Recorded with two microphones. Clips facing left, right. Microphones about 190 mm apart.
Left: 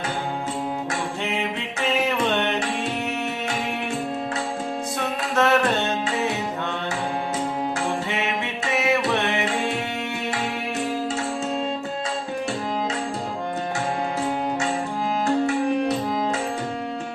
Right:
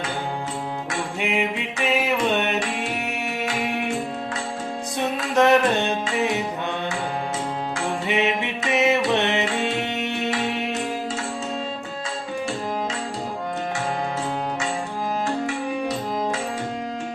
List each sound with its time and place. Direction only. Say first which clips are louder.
1.2 s music: right 2 dB; 10° right (ahead or behind)
4.9 s music: right 4 dB; 15° right (ahead or behind)
8.0 s music: right 4 dB; 20° right (ahead or behind)